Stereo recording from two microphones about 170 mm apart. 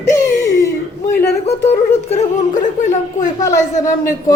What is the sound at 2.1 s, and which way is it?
Speech, 45° left (ahead or behind).